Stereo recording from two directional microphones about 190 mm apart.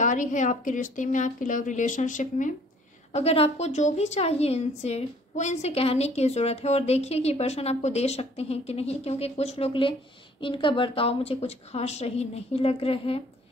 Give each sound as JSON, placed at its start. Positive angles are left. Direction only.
{"t": 0.0, "sound": "a woman's voice", "side_deg": 40}